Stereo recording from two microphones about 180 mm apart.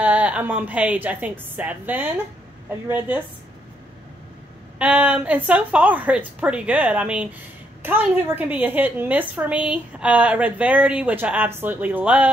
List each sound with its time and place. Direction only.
0.0 s a woman's voice: 5° right (ahead or behind)
4.7 s a woman's voice: 5° right (ahead or behind)